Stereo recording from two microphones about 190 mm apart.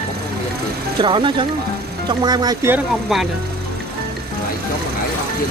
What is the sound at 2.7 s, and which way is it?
Speech, centre (ahead or behind).